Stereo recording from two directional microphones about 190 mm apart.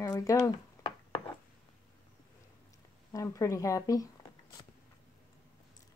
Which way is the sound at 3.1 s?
15° left (ahead or behind).